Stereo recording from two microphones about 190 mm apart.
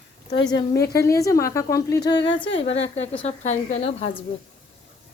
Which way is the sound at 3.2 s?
35° left (ahead or behind).